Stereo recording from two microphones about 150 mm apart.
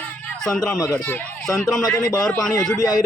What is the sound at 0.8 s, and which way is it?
Speech, 20° left (ahead or behind).